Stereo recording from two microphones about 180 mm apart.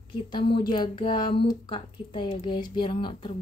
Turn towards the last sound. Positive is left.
turn(degrees=25)  # may be behind; listen again after turning